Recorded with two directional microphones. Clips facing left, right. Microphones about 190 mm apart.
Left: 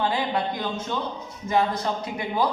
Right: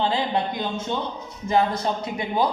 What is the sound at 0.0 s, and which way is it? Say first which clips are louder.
Speech: right 1 dB; 25° right (ahead or behind).